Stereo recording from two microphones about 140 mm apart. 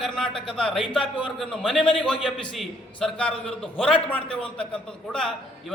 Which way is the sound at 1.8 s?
35° left (ahead or behind).